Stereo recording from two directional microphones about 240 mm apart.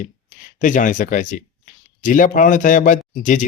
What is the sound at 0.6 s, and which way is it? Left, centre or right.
Speech, left.